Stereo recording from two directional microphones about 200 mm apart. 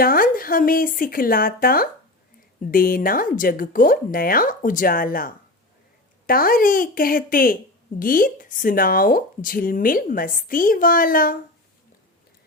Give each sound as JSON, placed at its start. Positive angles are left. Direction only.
{"t": 0.0, "sound": "speech", "side_deg": 45}